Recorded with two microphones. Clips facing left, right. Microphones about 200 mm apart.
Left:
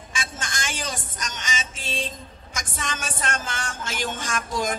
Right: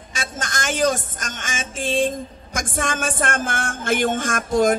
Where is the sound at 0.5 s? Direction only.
50° right (ahead or behind).